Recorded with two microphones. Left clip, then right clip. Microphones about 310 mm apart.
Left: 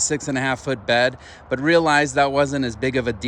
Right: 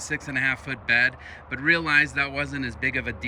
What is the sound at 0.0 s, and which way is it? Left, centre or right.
Speech, centre.